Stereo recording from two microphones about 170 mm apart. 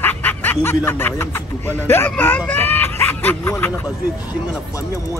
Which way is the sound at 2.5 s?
10° left (ahead or behind).